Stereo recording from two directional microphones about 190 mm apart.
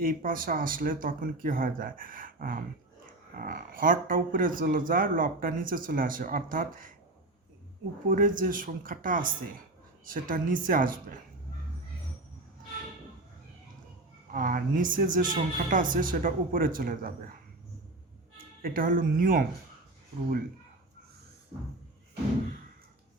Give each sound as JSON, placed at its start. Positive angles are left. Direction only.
{"t": 0.0, "sound": "speech", "side_deg": -45}
{"t": 8.1, "sound": "speech", "side_deg": -45}
{"t": 14.3, "sound": "speech", "side_deg": -45}
{"t": 18.6, "sound": "speech", "side_deg": -45}